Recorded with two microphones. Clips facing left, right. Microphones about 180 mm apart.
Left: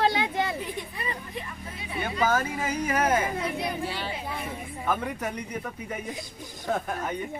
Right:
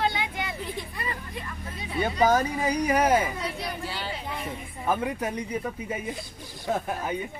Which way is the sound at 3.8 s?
Centre (ahead or behind).